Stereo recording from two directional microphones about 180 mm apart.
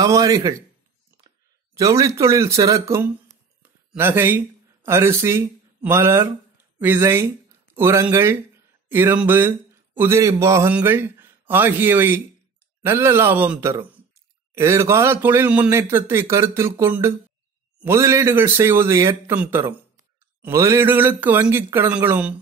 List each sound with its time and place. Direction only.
0.0 s a man's voice: 20° right (ahead or behind)
1.8 s speech: 20° right (ahead or behind)